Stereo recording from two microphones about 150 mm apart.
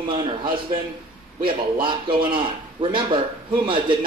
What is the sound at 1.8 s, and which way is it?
Speech, 35° right (ahead or behind).